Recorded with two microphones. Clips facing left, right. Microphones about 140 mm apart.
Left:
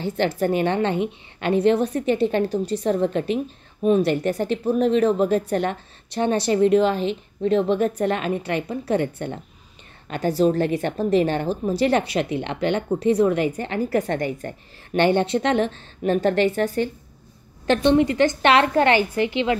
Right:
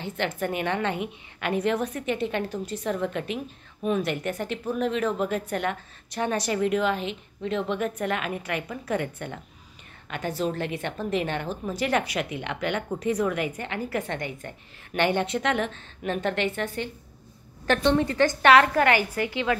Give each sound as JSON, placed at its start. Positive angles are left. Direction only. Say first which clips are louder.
{"t": 0.4, "sound": "a woman's voice", "louder": "left 6 dB", "side_deg": 35}
{"t": 17.6, "sound": "a woman's voice", "louder": "left 5 dB", "side_deg": 20}